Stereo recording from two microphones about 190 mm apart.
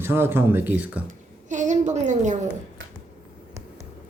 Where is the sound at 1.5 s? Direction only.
40° right (ahead or behind).